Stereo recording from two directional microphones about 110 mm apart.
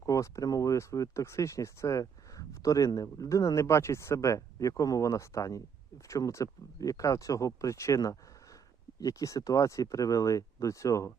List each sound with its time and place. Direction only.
0.0 s speech: 30° left (ahead or behind)